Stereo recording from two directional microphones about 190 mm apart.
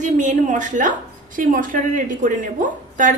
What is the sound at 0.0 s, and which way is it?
A woman's voice, 40° right (ahead or behind).